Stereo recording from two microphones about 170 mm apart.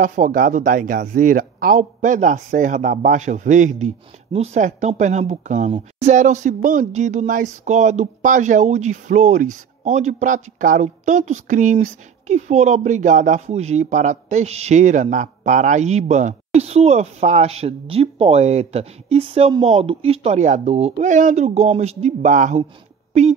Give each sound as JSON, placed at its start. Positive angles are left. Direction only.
{"t": 0.0, "sound": "speech", "side_deg": -50}